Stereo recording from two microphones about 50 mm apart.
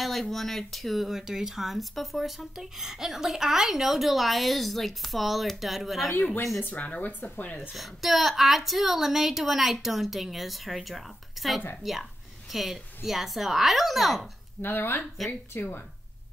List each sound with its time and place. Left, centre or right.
0.0 s speech: centre
6.6 s speech: left
7.7 s a woman's voice: centre
14.6 s speech: left